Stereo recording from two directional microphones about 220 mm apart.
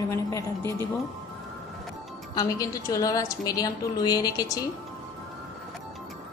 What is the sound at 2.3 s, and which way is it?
A woman's voice, 15° left (ahead or behind).